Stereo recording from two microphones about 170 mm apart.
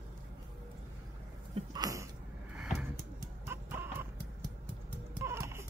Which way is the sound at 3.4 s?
15° right (ahead or behind).